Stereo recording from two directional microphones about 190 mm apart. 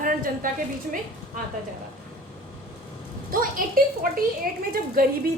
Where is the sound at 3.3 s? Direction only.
45° right (ahead or behind).